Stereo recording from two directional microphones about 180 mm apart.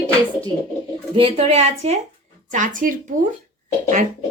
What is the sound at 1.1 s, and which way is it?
A woman's voice, 30° right (ahead or behind).